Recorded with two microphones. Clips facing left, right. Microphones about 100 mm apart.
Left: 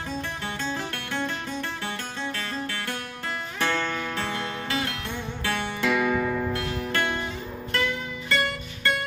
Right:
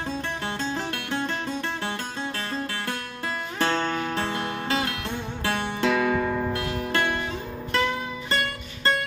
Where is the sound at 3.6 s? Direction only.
35° right (ahead or behind).